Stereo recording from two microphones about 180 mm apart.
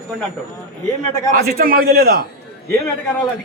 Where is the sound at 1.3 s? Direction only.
60° right (ahead or behind).